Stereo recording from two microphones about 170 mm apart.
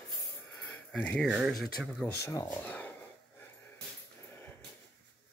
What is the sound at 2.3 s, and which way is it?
Speech, 10° left (ahead or behind).